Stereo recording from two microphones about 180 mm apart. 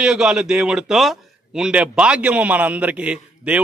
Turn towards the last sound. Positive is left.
turn(degrees=-5)  # may be behind; listen again after turning